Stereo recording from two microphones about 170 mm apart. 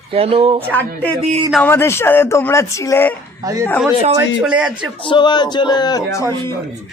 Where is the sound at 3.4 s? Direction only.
20° right (ahead or behind).